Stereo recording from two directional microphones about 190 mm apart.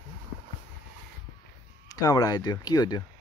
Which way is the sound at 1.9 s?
20° left (ahead or behind).